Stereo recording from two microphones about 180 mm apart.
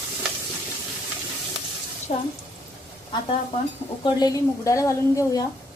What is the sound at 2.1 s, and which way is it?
Speech, 40° left (ahead or behind).